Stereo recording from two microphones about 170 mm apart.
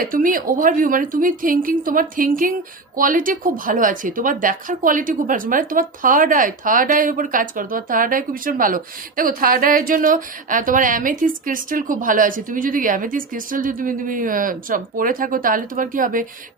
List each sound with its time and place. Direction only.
0.0 s speech: 55° right (ahead or behind)